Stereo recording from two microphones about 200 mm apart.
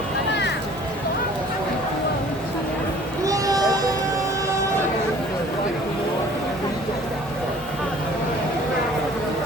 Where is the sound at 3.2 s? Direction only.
15° right (ahead or behind).